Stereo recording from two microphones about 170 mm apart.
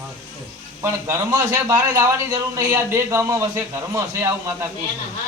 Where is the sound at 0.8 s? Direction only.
15° right (ahead or behind).